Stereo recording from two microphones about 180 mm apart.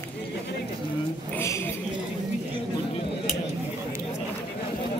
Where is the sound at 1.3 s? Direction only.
15° left (ahead or behind).